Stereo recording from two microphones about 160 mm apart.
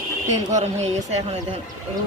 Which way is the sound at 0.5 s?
45° right (ahead or behind).